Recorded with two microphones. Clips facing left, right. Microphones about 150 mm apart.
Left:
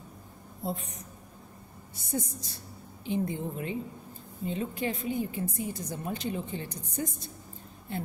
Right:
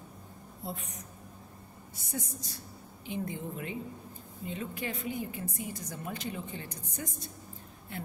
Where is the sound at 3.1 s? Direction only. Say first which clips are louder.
Left 5 dB; 30° left (ahead or behind).